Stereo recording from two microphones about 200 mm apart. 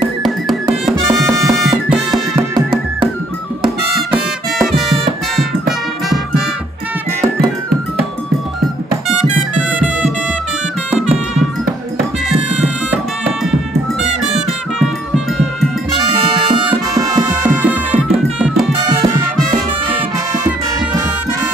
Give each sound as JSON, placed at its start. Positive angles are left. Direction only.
{"t": 1.1, "sound": "music", "side_deg": 0}
{"t": 4.1, "sound": "music", "side_deg": 0}
{"t": 9.1, "sound": "music", "side_deg": -5}
{"t": 12.3, "sound": "music", "side_deg": -5}
{"t": 14.0, "sound": "music", "side_deg": 0}
{"t": 17.6, "sound": "music", "side_deg": -10}
{"t": 18.8, "sound": "music", "side_deg": -20}